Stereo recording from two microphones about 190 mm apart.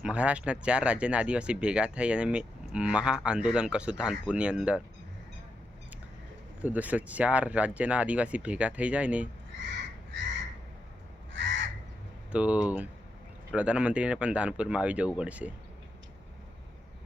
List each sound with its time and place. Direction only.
0.0 s speech: 5° right (ahead or behind)
6.6 s speech: 10° right (ahead or behind)
11.3 s crow: 75° right (ahead or behind)
12.3 s speech: 5° right (ahead or behind)